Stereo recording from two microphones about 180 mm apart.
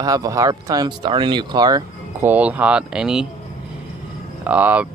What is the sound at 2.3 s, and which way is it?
Speech, 10° right (ahead or behind).